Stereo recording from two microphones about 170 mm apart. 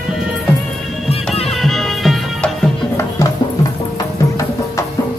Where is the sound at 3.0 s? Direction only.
20° left (ahead or behind).